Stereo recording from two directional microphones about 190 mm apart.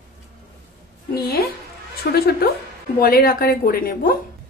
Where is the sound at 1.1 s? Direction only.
55° left (ahead or behind).